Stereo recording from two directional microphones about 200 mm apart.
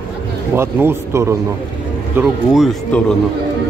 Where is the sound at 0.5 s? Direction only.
10° right (ahead or behind).